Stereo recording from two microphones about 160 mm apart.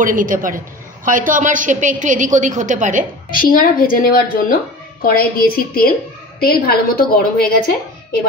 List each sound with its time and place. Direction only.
0.0 s a woman's voice: 55° right (ahead or behind)
3.3 s a woman's voice: 65° left (ahead or behind)